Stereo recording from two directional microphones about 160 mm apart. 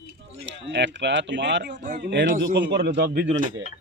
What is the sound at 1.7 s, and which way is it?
Speech, 50° right (ahead or behind).